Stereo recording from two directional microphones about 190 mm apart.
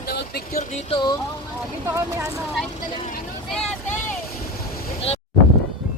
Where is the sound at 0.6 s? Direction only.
35° left (ahead or behind).